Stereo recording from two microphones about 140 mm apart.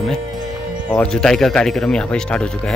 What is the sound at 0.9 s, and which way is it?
Speech, 5° left (ahead or behind).